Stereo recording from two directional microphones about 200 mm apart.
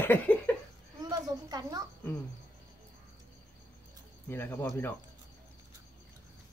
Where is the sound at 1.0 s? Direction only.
20° right (ahead or behind).